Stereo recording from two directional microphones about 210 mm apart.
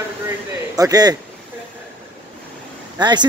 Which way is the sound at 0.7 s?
15° right (ahead or behind).